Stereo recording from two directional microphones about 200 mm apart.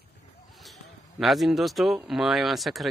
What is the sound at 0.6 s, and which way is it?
Speech, centre (ahead or behind).